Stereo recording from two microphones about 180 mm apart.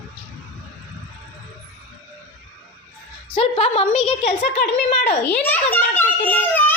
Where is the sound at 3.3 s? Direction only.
35° left (ahead or behind).